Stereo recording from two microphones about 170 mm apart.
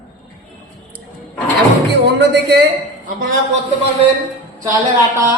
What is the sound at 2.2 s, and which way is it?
Speech, 80° right.